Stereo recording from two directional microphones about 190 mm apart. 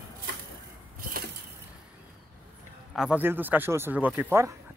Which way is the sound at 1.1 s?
50° right (ahead or behind).